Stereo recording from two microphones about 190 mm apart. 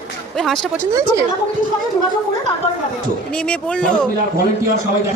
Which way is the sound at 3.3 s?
5° left (ahead or behind).